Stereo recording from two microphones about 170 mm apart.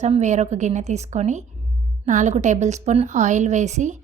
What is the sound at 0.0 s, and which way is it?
A woman's voice, 40° right (ahead or behind).